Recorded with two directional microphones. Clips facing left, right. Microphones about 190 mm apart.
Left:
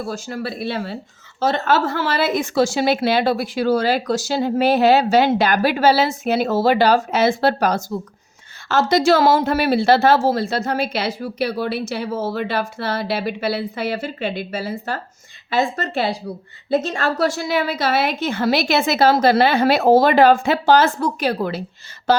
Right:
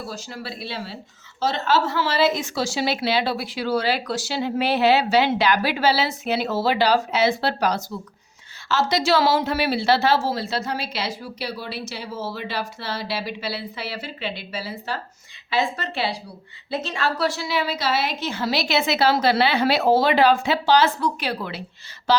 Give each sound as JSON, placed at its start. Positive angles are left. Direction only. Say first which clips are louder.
{"t": 0.0, "sound": "a woman's voice", "louder": "left 7 dB", "side_deg": 50}